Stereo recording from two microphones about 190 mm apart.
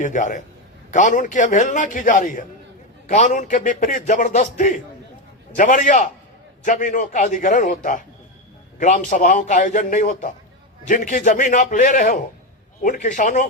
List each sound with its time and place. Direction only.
0.0 s a man's voice: 40° left (ahead or behind)